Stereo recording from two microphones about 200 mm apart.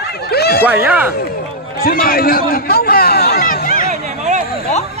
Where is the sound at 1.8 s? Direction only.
45° left (ahead or behind).